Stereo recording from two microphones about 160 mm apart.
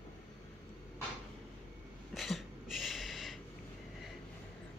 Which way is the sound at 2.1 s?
Centre (ahead or behind).